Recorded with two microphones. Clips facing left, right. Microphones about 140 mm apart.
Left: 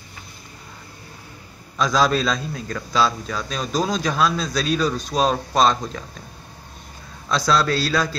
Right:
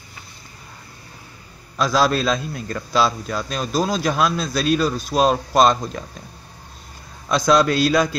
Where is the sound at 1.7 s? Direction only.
5° right (ahead or behind).